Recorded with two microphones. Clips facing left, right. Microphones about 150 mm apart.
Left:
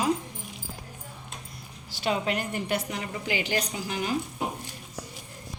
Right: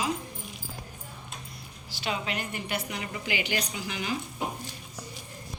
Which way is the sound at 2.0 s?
45° left (ahead or behind).